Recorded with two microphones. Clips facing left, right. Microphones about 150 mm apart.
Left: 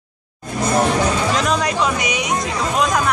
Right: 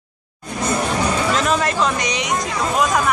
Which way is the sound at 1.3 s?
Centre (ahead or behind).